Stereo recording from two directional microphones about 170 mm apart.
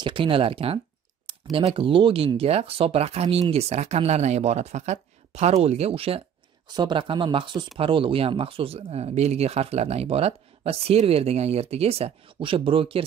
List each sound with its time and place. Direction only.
0.0 s speech: 30° right (ahead or behind)
1.3 s a sound: 30° right (ahead or behind)
1.7 s speech: 30° right (ahead or behind)